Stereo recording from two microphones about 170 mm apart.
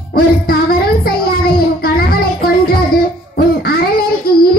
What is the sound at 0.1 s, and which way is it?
Child singing, 65° left (ahead or behind).